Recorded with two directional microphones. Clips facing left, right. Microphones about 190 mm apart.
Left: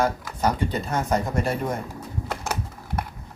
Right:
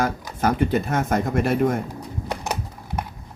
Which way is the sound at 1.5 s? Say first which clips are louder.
Right 7 dB; 60° right (ahead or behind).